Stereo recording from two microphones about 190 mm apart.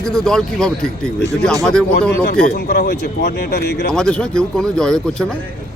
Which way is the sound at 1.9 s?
55° left (ahead or behind).